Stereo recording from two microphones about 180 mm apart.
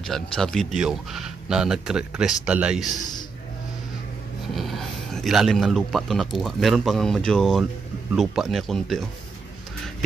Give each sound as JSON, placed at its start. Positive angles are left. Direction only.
{"t": 0.0, "sound": "a man's voice", "side_deg": 0}
{"t": 3.0, "sound": "a sound", "side_deg": 20}
{"t": 4.6, "sound": "a man's voice", "side_deg": 0}